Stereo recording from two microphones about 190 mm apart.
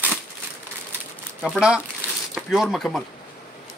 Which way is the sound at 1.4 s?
5° right (ahead or behind).